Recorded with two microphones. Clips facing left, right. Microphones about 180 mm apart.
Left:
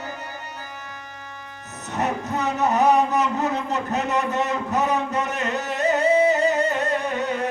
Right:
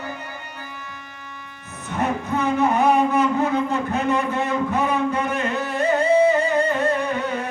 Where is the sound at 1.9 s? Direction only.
40° left (ahead or behind).